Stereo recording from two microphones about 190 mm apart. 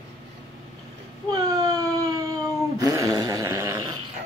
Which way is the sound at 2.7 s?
15° right (ahead or behind).